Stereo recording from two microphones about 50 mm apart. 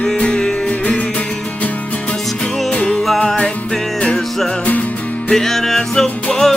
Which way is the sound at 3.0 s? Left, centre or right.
Centre.